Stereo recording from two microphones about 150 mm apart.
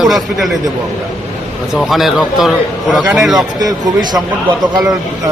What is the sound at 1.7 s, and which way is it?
Speech, centre (ahead or behind).